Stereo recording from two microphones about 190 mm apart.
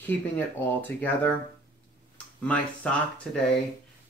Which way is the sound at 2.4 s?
5° left (ahead or behind).